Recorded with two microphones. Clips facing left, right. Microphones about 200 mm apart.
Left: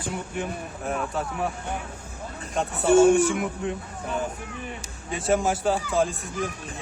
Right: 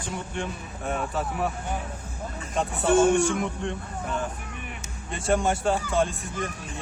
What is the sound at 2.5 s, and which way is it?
A man's voice, centre (ahead or behind).